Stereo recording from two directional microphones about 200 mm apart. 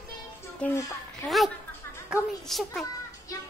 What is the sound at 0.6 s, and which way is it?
A woman's voice, 5° left (ahead or behind).